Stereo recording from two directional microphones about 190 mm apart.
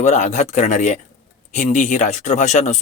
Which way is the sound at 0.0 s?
40° left (ahead or behind).